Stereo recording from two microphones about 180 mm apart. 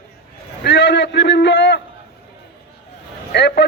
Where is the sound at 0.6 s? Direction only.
75° left (ahead or behind).